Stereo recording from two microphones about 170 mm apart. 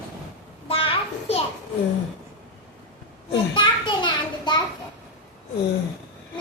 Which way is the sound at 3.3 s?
25° left (ahead or behind).